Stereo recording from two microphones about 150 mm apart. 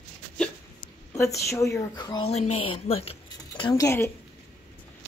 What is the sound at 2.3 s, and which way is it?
Speech, 40° left (ahead or behind).